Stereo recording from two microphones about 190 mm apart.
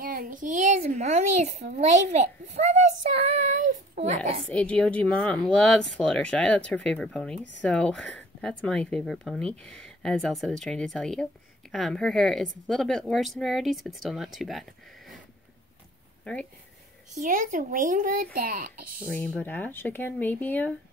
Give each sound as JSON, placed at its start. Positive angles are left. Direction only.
{"t": 0.0, "sound": "a child's voice", "side_deg": -50}
{"t": 4.5, "sound": "speech", "side_deg": 5}
{"t": 17.2, "sound": "speech", "side_deg": -45}
{"t": 19.1, "sound": "speech", "side_deg": 10}